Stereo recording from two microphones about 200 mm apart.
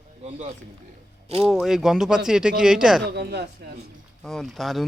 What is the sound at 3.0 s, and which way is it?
Speech, 55° right (ahead or behind).